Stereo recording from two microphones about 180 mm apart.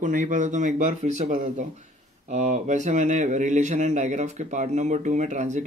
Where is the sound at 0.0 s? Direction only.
45° right (ahead or behind).